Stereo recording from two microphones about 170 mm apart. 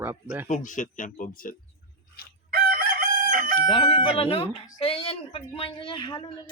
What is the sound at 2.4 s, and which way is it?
Chicken, 60° right (ahead or behind).